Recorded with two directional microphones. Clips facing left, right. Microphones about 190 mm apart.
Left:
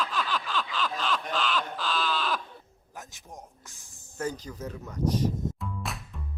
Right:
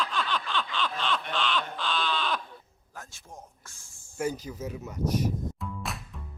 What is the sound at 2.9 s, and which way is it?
A man's voice, 15° left (ahead or behind).